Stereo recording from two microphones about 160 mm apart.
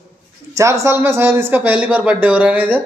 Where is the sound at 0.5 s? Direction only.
20° right (ahead or behind).